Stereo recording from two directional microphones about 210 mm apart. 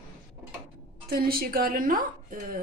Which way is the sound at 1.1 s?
45° right (ahead or behind).